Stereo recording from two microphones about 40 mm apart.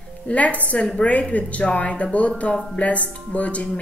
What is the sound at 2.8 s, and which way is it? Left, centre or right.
Speech, left.